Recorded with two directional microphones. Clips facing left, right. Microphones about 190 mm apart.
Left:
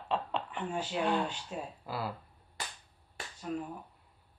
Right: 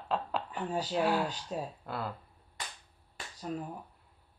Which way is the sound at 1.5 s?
35° right (ahead or behind).